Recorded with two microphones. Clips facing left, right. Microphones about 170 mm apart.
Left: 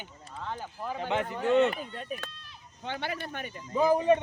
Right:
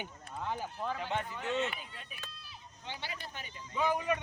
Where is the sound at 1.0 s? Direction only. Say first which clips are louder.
Left 6 dB; 75° left (ahead or behind).